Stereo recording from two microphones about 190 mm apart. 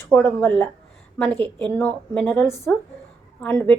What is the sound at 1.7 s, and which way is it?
Speech, 5° left (ahead or behind).